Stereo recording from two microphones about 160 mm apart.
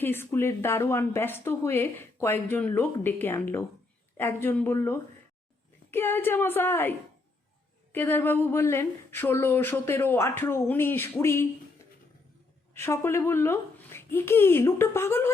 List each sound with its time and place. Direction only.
0.0 s speech: 15° left (ahead or behind)
7.9 s speech: 15° left (ahead or behind)
12.7 s speech: 15° left (ahead or behind)